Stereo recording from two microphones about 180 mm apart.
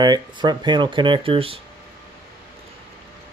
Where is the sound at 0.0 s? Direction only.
25° right (ahead or behind).